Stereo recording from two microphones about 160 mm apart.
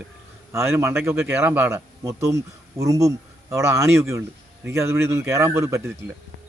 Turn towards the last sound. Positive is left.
turn(degrees=-20)  # may be behind; listen again after turning